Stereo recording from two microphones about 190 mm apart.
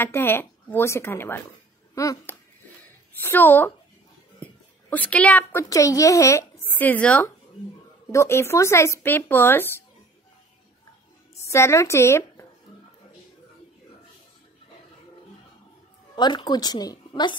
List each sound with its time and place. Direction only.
0.0 s a woman's voice: 10° left (ahead or behind)
11.4 s a woman's voice: 15° left (ahead or behind)
16.2 s speech: 25° left (ahead or behind)